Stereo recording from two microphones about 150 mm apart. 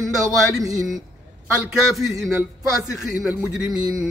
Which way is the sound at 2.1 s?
20° right (ahead or behind).